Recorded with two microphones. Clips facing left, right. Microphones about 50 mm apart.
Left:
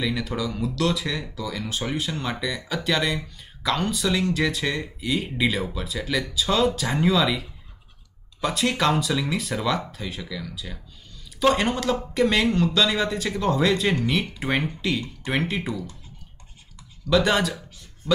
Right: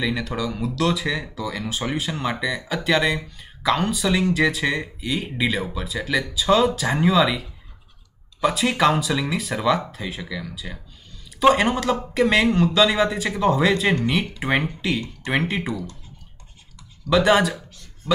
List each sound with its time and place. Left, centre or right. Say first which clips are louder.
0.0 s speech: right 2 dB; centre
15.3 s speech: right 3 dB; centre
17.1 s speech: right 3 dB; centre